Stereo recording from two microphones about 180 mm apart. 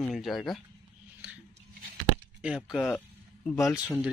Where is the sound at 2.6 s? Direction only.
5° left (ahead or behind).